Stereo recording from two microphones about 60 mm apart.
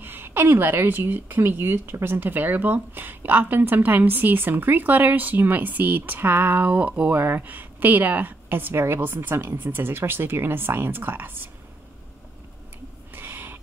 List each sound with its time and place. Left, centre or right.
0.0 s speech: right
6.7 s speech: right
7.2 s speech: right
13.1 s a sound: right